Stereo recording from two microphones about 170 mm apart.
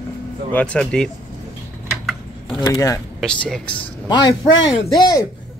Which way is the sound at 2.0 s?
5° left (ahead or behind).